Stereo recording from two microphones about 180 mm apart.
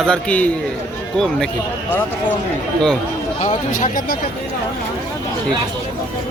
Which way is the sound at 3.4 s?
40° left (ahead or behind).